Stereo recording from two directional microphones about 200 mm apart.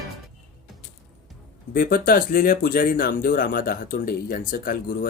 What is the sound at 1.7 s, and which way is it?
Speech, 45° left (ahead or behind).